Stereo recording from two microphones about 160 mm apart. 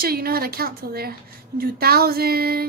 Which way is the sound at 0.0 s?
70° right (ahead or behind).